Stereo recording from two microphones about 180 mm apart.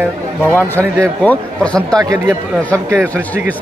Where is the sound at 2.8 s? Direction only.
15° right (ahead or behind).